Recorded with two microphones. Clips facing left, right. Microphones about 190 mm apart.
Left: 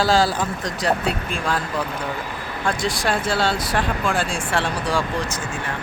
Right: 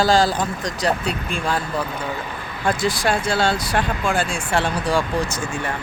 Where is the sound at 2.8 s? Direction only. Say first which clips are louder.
Right 2 dB; centre (ahead or behind).